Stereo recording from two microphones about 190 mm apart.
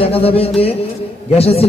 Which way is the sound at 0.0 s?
30° left (ahead or behind).